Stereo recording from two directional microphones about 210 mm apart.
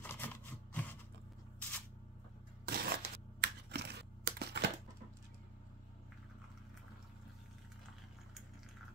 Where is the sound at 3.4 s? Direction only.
50° right (ahead or behind).